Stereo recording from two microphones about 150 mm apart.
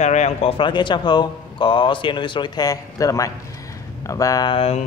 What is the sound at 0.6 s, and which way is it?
Speech, 30° left (ahead or behind).